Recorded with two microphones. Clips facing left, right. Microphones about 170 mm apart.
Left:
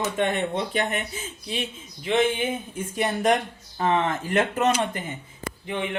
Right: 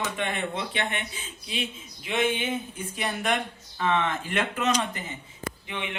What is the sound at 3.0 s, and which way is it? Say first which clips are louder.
A man's voice: left 6 dB; 40° left (ahead or behind).